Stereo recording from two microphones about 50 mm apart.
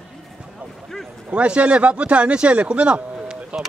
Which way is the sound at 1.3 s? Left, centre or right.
Right.